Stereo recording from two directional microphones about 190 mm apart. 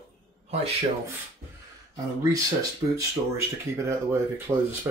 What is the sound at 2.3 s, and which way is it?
Speech, 15° right (ahead or behind).